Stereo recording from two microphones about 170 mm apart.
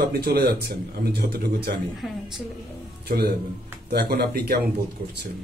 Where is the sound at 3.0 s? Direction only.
65° right (ahead or behind).